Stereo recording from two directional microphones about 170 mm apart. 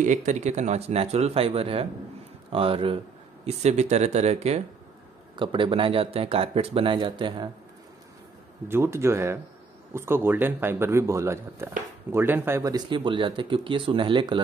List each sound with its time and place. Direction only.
0.0 s speech: 45° right (ahead or behind); by 7.4 s 30° right (ahead or behind)
8.6 s speech: 15° right (ahead or behind)